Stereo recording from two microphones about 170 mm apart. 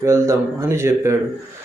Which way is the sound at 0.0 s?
15° right (ahead or behind).